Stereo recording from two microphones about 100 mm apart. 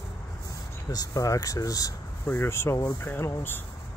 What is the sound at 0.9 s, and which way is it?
Speech, 35° left (ahead or behind).